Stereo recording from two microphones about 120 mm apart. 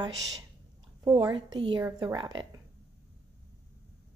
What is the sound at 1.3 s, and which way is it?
A woman's voice, 45° right (ahead or behind).